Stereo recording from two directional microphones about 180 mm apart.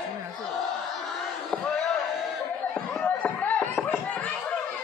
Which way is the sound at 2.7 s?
5° left (ahead or behind).